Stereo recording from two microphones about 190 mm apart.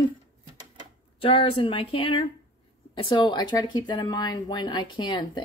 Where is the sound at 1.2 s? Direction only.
30° left (ahead or behind).